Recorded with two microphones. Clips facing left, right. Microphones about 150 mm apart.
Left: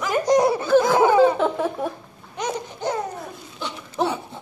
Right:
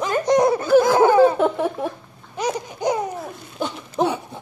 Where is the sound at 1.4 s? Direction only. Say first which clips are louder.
Right 2 dB; 5° right (ahead or behind).